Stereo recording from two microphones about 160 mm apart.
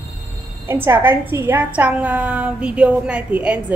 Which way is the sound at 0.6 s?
15° right (ahead or behind).